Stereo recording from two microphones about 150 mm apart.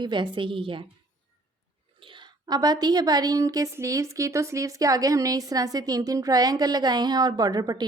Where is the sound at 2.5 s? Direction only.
25° right (ahead or behind).